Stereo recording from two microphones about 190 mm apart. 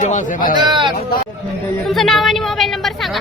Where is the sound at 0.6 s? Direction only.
25° right (ahead or behind).